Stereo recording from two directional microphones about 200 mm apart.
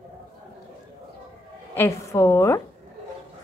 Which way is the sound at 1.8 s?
15° left (ahead or behind).